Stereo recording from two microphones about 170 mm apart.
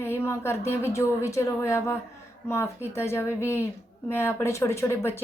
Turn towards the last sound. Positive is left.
turn(degrees=15)  # may be behind; listen again after turning